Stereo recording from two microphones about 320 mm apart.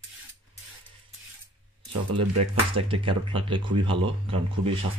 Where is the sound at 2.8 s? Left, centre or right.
Centre.